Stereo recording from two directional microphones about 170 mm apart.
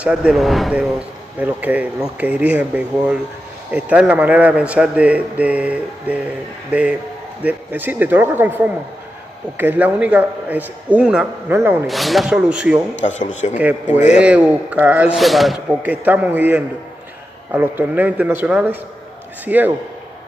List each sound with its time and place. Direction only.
0.0 s speech: 5° right (ahead or behind)
11.9 s a man's voice: centre (ahead or behind)
13.3 s a man's voice: 45° left (ahead or behind)
13.6 s speech: 10° right (ahead or behind)
13.9 s a man's voice: 45° left (ahead or behind)
14.2 s speech: 5° right (ahead or behind)
15.8 s speech: 10° right (ahead or behind)